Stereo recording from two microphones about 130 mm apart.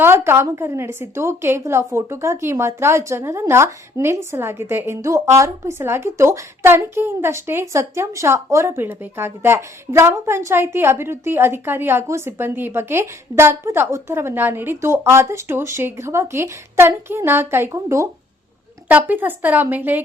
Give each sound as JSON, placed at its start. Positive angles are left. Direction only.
{"t": 0.0, "sound": "a woman's voice", "side_deg": -20}